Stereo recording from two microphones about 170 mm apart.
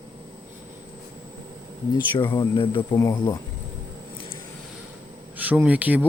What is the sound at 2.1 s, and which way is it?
Speech, 25° left (ahead or behind).